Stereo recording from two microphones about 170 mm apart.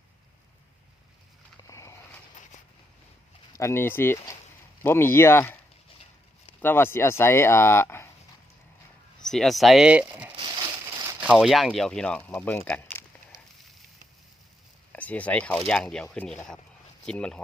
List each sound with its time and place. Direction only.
1.6 s vehicle: 15° left (ahead or behind)
3.5 s speech: 15° left (ahead or behind)
6.6 s speech: 15° left (ahead or behind)
9.2 s speech: centre (ahead or behind)
10.3 s a sound: 25° right (ahead or behind)
11.2 s speech: 5° right (ahead or behind)
14.9 s speech: 10° left (ahead or behind)